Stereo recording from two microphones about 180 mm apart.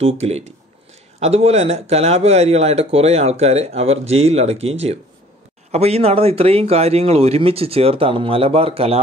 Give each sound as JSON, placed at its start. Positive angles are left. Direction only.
{"t": 0.0, "sound": "speech", "side_deg": -35}